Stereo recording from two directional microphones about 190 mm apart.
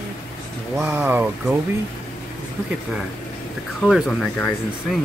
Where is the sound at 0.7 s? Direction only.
10° right (ahead or behind).